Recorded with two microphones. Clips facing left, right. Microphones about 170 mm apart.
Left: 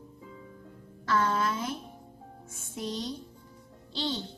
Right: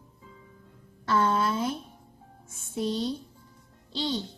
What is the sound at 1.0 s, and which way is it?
Speech, 30° right (ahead or behind).